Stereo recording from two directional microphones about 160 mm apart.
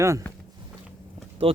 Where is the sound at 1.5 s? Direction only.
35° right (ahead or behind).